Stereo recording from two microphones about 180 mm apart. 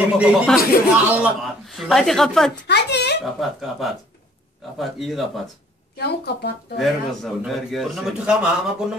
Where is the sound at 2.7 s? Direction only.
70° left (ahead or behind).